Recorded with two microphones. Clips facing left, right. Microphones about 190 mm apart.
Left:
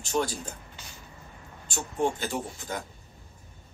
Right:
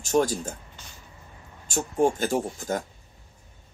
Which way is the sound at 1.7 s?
45° right (ahead or behind).